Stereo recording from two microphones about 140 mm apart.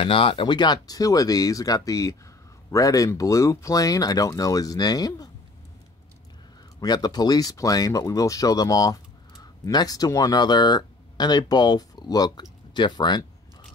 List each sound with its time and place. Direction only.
0.0 s speech: 40° left (ahead or behind)
6.8 s speech: 30° left (ahead or behind)